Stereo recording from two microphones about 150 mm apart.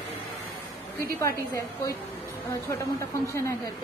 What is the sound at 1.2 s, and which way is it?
A woman's voice, 20° left (ahead or behind).